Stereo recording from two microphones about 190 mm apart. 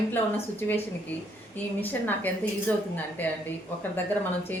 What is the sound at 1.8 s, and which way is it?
A woman's voice, 10° left (ahead or behind).